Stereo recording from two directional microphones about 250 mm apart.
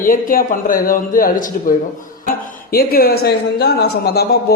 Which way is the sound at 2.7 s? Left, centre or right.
Left.